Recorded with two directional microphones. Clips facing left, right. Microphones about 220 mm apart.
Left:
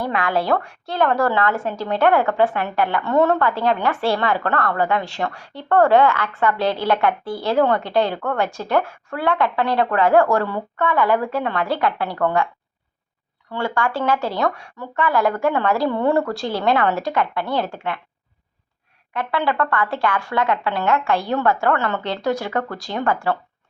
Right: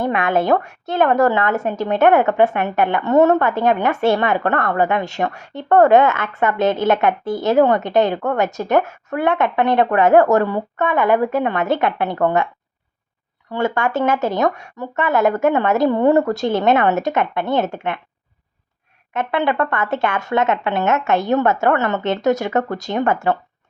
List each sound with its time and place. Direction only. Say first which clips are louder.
0.0 s speech: right 4 dB; 25° right (ahead or behind)
13.5 s speech: right 3 dB; 20° right (ahead or behind)
19.1 s speech: right 3 dB; 20° right (ahead or behind)